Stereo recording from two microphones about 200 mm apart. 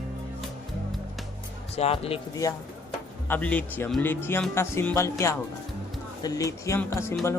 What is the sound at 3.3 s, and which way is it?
Speech, 5° left (ahead or behind).